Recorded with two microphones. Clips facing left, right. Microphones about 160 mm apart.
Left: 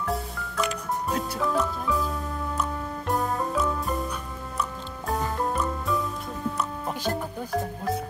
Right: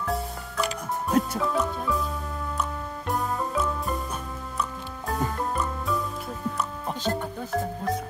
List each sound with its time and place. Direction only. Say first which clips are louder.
0.6 s music: left 1 dB; 35° right (ahead or behind)
1.4 s music: even; centre (ahead or behind)
3.1 s music: left 1 dB; centre (ahead or behind)